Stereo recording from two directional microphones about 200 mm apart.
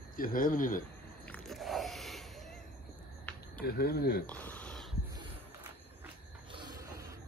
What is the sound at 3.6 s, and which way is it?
Speech, 50° left (ahead or behind).